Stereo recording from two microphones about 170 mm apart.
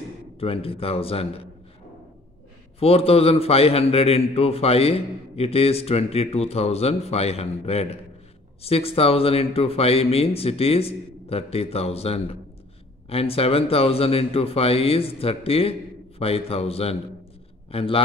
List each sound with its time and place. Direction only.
0.4 s a man's voice: 35° left (ahead or behind)
2.8 s a man's voice: 35° left (ahead or behind)